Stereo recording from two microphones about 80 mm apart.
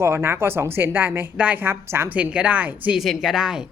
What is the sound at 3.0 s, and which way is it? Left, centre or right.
Speech, centre.